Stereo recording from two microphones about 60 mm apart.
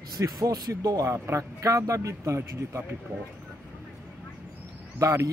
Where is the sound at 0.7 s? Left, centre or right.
Right.